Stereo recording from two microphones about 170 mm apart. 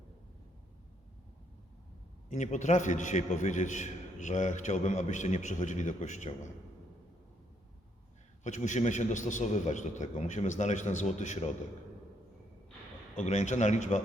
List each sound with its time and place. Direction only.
2.3 s a man's voice: 45° left (ahead or behind)
8.4 s a man's voice: 45° left (ahead or behind)
13.1 s a man's voice: 45° left (ahead or behind)